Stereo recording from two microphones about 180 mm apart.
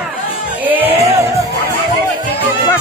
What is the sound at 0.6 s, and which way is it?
Music, 10° right (ahead or behind).